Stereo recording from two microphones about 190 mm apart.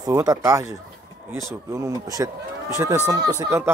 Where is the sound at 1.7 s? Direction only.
15° right (ahead or behind).